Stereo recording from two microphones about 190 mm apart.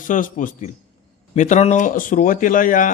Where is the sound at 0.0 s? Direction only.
45° left (ahead or behind).